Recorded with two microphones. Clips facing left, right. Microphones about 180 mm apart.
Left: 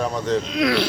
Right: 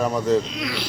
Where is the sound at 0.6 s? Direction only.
65° left (ahead or behind).